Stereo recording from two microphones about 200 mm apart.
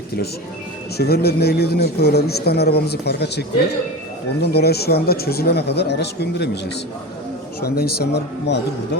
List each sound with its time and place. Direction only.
0.9 s a man's voice: 50° left (ahead or behind)
7.6 s a man's voice: 50° left (ahead or behind)